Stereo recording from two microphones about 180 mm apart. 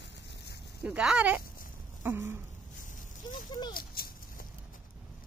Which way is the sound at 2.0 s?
10° right (ahead or behind).